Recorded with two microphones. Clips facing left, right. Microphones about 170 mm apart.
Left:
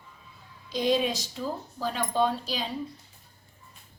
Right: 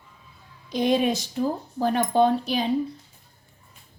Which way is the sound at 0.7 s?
55° right (ahead or behind).